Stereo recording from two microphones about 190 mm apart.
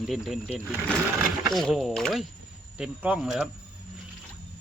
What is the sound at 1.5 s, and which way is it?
Speech, centre (ahead or behind).